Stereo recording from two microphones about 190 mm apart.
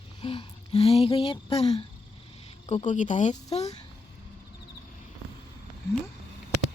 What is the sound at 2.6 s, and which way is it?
Speech, 35° left (ahead or behind).